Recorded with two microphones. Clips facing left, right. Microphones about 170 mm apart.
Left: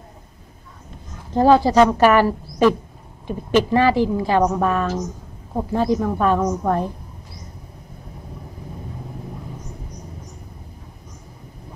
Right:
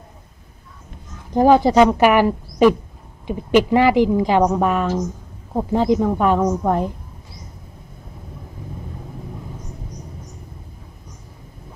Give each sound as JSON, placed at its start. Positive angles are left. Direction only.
{"t": 1.3, "sound": "a woman's voice", "side_deg": -15}